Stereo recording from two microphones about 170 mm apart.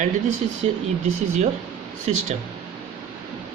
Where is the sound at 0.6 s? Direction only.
35° right (ahead or behind).